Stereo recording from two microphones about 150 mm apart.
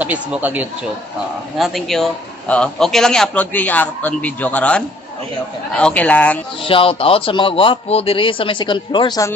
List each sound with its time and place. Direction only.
0.0 s speech: 10° right (ahead or behind)
1.6 s a man's voice: centre (ahead or behind)
6.6 s a man's voice: 35° left (ahead or behind)